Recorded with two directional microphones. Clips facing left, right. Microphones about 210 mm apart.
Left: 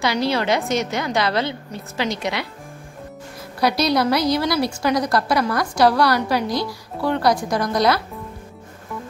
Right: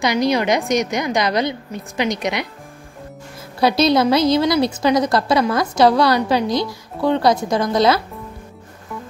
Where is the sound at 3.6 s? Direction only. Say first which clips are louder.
Right 4 dB; 25° right (ahead or behind).